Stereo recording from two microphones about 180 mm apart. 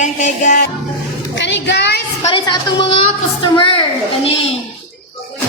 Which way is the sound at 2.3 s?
25° left (ahead or behind).